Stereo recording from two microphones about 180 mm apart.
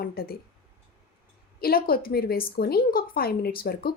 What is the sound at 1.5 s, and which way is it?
Speech, 55° left (ahead or behind).